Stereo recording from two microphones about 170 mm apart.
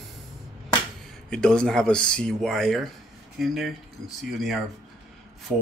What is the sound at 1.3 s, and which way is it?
Speech, 5° left (ahead or behind).